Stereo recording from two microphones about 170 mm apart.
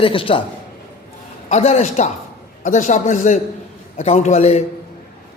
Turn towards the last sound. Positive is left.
turn(degrees=40)  # may be behind; listen again after turning